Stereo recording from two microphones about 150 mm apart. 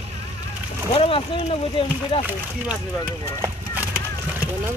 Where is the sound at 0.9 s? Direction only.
40° left (ahead or behind).